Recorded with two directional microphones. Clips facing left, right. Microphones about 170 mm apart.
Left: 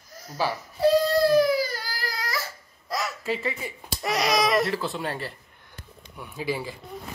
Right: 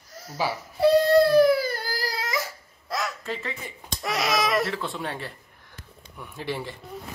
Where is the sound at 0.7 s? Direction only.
60° right (ahead or behind); by 2.2 s 35° right (ahead or behind).